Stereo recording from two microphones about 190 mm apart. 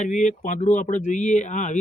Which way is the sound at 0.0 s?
40° left (ahead or behind).